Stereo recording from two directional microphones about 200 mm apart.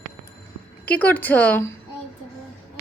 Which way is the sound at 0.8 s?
10° left (ahead or behind).